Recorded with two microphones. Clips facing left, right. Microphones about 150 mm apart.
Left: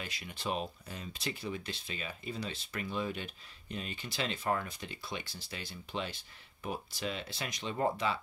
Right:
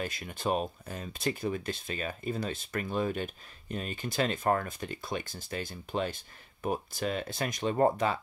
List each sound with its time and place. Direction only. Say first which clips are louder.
0.0 s speech: right 7 dB; 50° right (ahead or behind)